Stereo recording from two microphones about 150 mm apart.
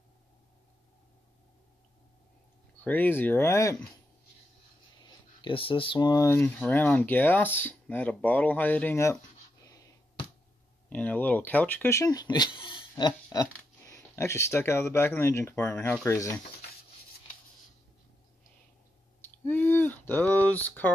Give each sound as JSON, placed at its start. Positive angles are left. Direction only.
{"t": 2.8, "sound": "speech", "side_deg": 10}
{"t": 5.0, "sound": "speech", "side_deg": 35}
{"t": 10.9, "sound": "speech", "side_deg": 10}
{"t": 19.4, "sound": "a sound", "side_deg": 15}